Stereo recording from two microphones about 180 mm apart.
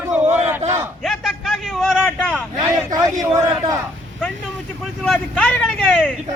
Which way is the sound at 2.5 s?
20° right (ahead or behind).